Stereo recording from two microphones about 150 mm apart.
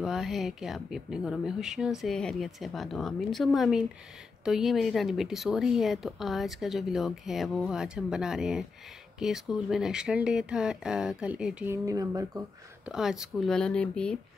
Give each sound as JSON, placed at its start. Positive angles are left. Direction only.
{"t": 0.0, "sound": "a woman's voice", "side_deg": 0}
{"t": 12.8, "sound": "a woman's voice", "side_deg": -5}